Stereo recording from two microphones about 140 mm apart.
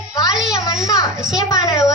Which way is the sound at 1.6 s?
25° left (ahead or behind).